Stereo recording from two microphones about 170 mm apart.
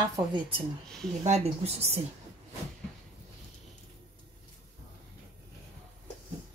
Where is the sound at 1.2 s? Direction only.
40° right (ahead or behind).